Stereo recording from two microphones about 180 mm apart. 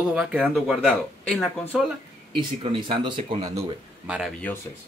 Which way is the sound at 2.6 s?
25° right (ahead or behind).